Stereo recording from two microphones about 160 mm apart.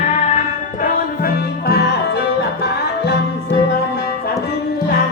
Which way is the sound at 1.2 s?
75° left (ahead or behind).